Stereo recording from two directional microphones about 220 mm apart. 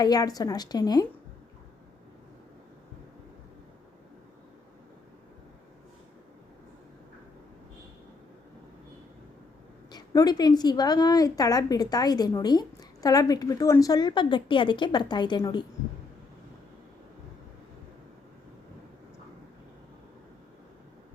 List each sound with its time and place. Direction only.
0.0 s a woman's voice: 15° left (ahead or behind)
9.9 s a woman's voice: 20° left (ahead or behind)